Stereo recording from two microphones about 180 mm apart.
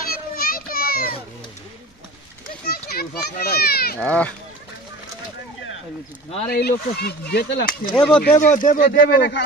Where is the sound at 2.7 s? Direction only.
60° left (ahead or behind).